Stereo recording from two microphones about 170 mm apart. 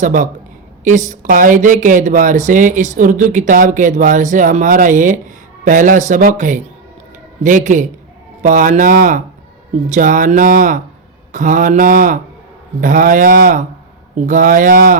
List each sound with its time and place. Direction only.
0.0 s speech: 50° right (ahead or behind)